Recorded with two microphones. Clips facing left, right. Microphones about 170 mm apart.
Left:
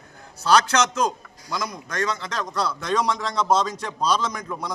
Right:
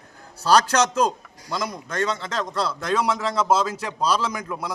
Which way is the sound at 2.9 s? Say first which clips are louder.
Right 2 dB; 5° right (ahead or behind).